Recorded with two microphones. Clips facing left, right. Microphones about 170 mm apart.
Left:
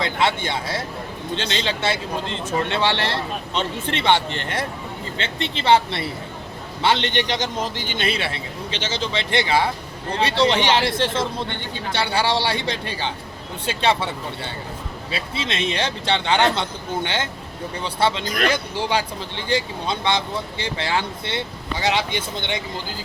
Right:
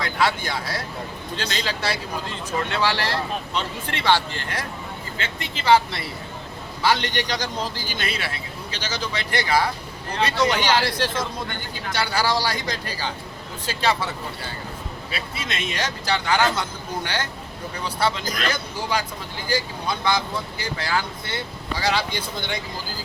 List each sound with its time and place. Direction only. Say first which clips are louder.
0.0 s speech: left 2 dB; 25° left (ahead or behind)